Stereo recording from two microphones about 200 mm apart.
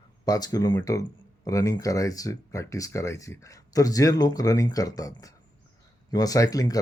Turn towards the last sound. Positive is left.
turn(degrees=15)  # may be behind; listen again after turning